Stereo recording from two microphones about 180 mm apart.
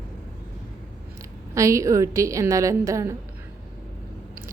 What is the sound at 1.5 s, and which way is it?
Speech, 15° right (ahead or behind).